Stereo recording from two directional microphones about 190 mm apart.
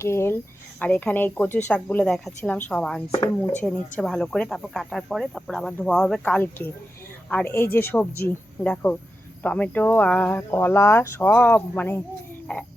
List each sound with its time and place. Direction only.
0.0 s speech: 15° left (ahead or behind)
3.1 s speech: 20° left (ahead or behind)
3.6 s speech: 5° left (ahead or behind)